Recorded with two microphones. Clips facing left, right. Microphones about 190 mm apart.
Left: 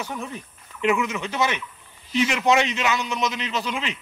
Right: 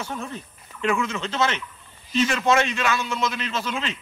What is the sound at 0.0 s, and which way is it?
A man's voice, 15° left (ahead or behind).